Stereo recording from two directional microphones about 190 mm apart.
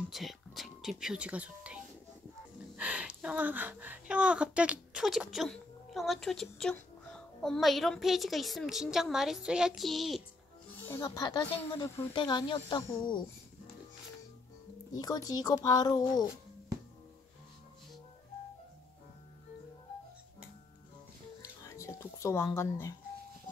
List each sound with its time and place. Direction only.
0.1 s speech: centre (ahead or behind)
2.8 s speech: 5° right (ahead or behind)
10.9 s speech: 15° left (ahead or behind)
15.0 s speech: 20° left (ahead or behind)
21.4 s music: 15° left (ahead or behind)